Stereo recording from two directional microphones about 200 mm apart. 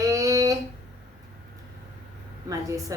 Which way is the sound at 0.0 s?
15° right (ahead or behind).